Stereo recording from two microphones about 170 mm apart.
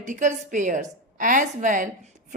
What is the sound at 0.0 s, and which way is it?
A woman's voice, 45° right (ahead or behind).